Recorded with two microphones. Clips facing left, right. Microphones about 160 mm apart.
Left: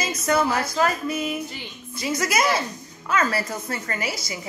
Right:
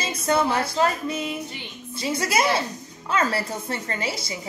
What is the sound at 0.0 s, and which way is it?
Music, 30° right (ahead or behind).